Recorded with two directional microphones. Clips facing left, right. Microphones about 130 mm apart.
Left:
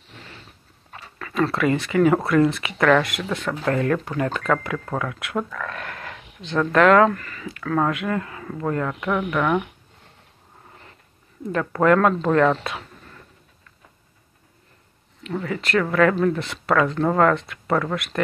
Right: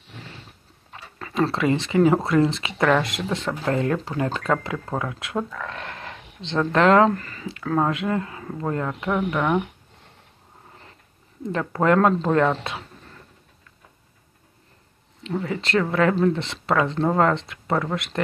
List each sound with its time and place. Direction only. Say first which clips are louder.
1.2 s speech: left 1 dB; 25° right (ahead or behind)
11.5 s speech: left 2 dB; 25° right (ahead or behind)
15.2 s speech: even; 25° right (ahead or behind)